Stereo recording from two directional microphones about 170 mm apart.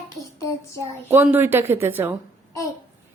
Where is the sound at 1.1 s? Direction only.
15° right (ahead or behind).